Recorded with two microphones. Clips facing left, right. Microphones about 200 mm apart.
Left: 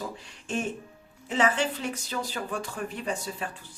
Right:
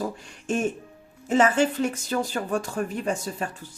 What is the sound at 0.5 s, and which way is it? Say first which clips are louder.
Speech: right 5 dB; 45° right (ahead or behind).